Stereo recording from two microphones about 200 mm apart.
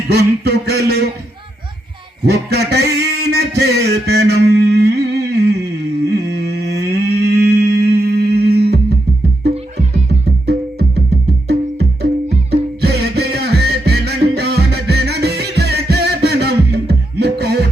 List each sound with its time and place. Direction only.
0.1 s speech: 55° right (ahead or behind)
2.2 s a sound: 55° right (ahead or behind)
6.1 s humming: 55° right (ahead or behind)
10.4 s music: 55° right (ahead or behind)
12.5 s music: 55° right (ahead or behind)